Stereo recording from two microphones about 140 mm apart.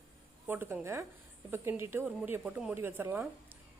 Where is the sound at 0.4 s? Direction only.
15° right (ahead or behind).